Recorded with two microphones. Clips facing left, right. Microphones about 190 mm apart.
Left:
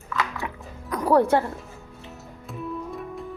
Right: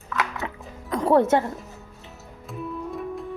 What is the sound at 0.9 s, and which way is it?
Music, 25° right (ahead or behind).